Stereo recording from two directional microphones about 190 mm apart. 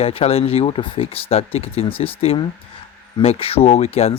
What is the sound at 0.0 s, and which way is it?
Speech, 30° left (ahead or behind).